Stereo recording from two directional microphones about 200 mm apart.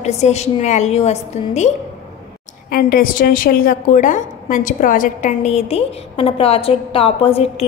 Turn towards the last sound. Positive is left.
turn(degrees=30)  # may be behind; listen again after turning